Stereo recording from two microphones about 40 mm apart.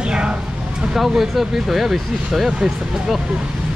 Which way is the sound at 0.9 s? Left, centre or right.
Centre.